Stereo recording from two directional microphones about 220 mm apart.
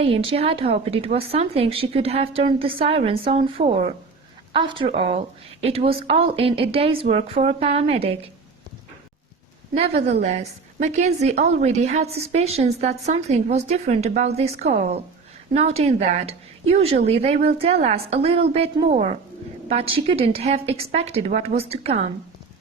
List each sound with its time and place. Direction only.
0.0 s speech: 25° right (ahead or behind)
9.7 s a woman's voice: 30° right (ahead or behind)